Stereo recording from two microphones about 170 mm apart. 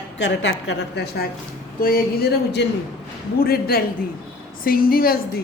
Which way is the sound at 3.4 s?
65° left (ahead or behind).